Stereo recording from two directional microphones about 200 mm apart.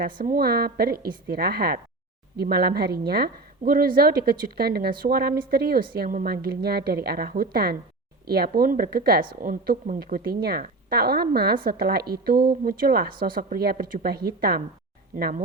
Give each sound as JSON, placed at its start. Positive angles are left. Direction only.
{"t": 0.0, "sound": "a woman's voice", "side_deg": -45}